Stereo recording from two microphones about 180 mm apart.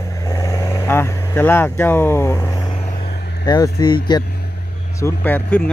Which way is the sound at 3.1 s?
65° left (ahead or behind).